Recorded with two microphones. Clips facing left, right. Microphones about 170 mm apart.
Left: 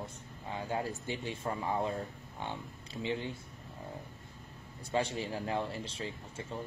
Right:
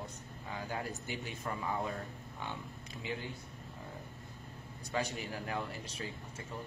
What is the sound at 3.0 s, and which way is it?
Speech, 25° left (ahead or behind).